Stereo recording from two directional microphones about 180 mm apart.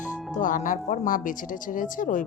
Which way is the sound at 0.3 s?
45° left (ahead or behind).